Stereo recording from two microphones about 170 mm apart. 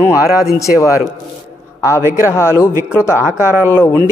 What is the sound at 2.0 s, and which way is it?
Speech, 15° right (ahead or behind).